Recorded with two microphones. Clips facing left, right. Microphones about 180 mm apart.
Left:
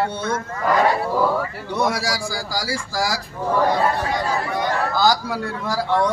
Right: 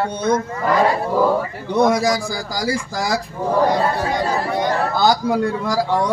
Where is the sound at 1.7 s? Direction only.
20° right (ahead or behind).